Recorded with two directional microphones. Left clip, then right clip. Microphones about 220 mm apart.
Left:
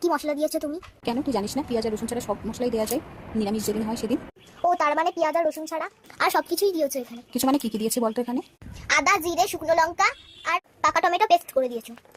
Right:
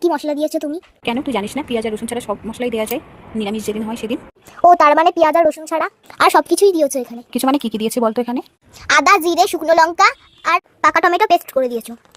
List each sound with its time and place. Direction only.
0.0 s a woman's voice: 30° right (ahead or behind)
1.0 s speech: 10° right (ahead or behind)
2.2 s speech: 30° right (ahead or behind)
2.6 s speech: 10° right (ahead or behind)
4.6 s a woman's voice: 50° right (ahead or behind)
7.3 s a woman's voice: 20° right (ahead or behind)
8.9 s a woman's voice: 50° right (ahead or behind)